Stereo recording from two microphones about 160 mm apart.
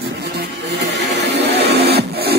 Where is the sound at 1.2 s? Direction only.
90° right.